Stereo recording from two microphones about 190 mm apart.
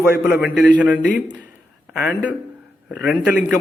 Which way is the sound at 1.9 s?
5° right (ahead or behind).